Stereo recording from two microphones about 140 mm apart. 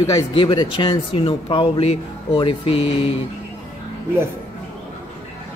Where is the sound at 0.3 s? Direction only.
35° left (ahead or behind).